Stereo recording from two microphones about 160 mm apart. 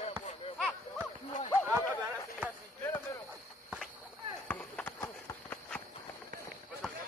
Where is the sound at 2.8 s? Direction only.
15° left (ahead or behind).